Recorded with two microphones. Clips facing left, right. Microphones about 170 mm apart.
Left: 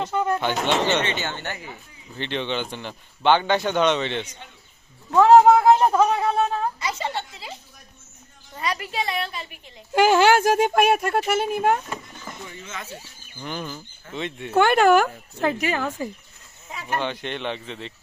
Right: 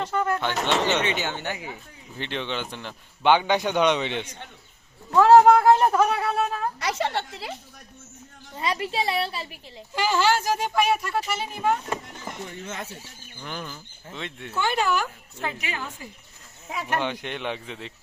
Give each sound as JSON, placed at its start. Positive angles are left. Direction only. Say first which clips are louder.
{"t": 0.0, "sound": "speech", "louder": "left 2 dB", "side_deg": 10}
{"t": 0.9, "sound": "speech", "louder": "left 1 dB", "side_deg": -10}
{"t": 5.1, "sound": "speech", "louder": "left 1 dB", "side_deg": 15}
{"t": 6.7, "sound": "a woman's voice", "louder": "right 2 dB", "side_deg": -75}
{"t": 8.8, "sound": "a woman's voice", "louder": "right 2 dB", "side_deg": -30}
{"t": 9.9, "sound": "speech", "louder": "left 6 dB", "side_deg": 55}
{"t": 12.6, "sound": "speech", "louder": "right 2 dB", "side_deg": -60}
{"t": 13.4, "sound": "speech", "louder": "left 4 dB", "side_deg": 5}
{"t": 14.5, "sound": "speech", "louder": "left 9 dB", "side_deg": 60}
{"t": 17.0, "sound": "speech", "louder": "left 1 dB", "side_deg": -10}